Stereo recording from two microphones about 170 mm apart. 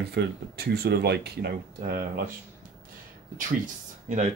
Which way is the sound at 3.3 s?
50° right (ahead or behind).